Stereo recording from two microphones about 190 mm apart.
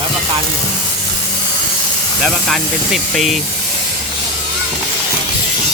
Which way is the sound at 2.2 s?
5° left (ahead or behind).